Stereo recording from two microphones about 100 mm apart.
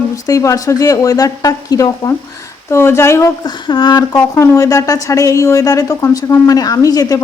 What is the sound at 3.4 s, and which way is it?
Speech, 50° left (ahead or behind).